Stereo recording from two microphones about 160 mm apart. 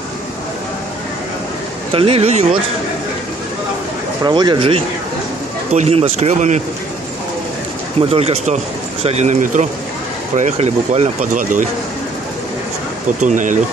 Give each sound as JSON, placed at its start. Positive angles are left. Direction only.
{"t": 1.9, "sound": "speech", "side_deg": -35}
{"t": 4.2, "sound": "speech", "side_deg": -25}
{"t": 5.7, "sound": "speech", "side_deg": -40}
{"t": 8.1, "sound": "speech", "side_deg": -40}
{"t": 13.2, "sound": "speech", "side_deg": -50}